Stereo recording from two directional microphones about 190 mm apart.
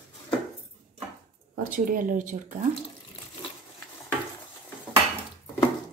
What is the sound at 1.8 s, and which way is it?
Speech, 45° right (ahead or behind).